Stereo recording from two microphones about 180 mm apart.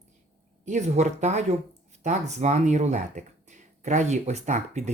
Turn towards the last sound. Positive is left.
turn(degrees=-40)  # may be behind; listen again after turning